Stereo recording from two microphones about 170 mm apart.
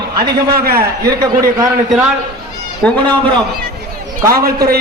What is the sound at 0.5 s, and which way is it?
Speech, 65° right (ahead or behind).